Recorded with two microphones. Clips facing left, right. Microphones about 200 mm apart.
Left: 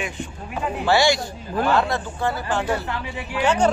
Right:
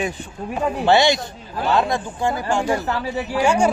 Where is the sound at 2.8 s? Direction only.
40° right (ahead or behind).